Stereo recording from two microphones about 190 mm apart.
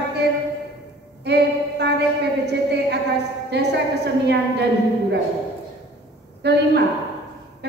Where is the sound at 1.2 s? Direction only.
60° right (ahead or behind).